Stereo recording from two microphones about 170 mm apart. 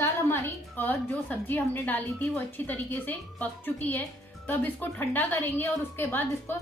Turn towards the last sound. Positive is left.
turn(degrees=10)  # may be behind; listen again after turning